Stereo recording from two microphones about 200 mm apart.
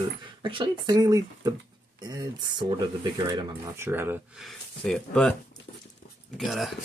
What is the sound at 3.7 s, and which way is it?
Speech, 10° right (ahead or behind).